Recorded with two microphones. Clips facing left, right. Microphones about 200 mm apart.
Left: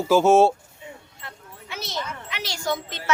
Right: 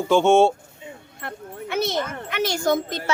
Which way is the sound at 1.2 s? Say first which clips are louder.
Right 10 dB; 55° right (ahead or behind).